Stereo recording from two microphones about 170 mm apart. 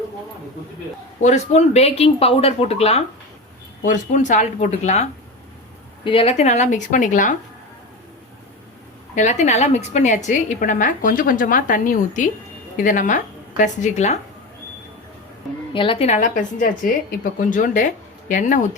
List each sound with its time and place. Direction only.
1.2 s speech: 40° left (ahead or behind)
3.8 s a woman's voice: 45° left (ahead or behind)
6.1 s a woman's voice: 35° left (ahead or behind); by 7.3 s 50° left (ahead or behind)
9.1 s a woman's voice: 45° left (ahead or behind)
15.7 s a woman's voice: 30° left (ahead or behind); by 18.8 s 50° left (ahead or behind)